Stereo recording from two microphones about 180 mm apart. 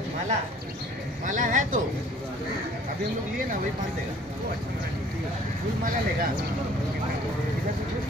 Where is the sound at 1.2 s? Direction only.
45° right (ahead or behind).